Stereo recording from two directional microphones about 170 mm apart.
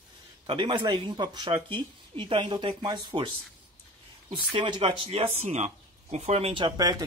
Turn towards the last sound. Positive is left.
turn(degrees=-25)  # may be behind; listen again after turning